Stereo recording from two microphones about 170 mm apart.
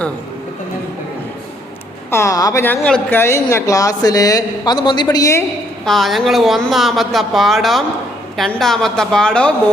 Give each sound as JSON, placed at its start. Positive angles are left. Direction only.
{"t": 2.0, "sound": "a woman's voice", "side_deg": 15}
{"t": 5.8, "sound": "speech", "side_deg": 0}